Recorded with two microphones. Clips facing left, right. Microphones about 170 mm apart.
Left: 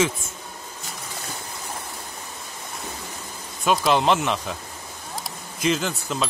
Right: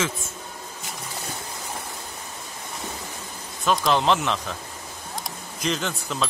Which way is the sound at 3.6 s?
5° left (ahead or behind).